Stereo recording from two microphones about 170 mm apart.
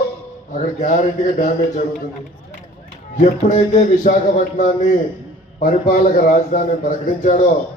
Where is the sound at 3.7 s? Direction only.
50° left (ahead or behind).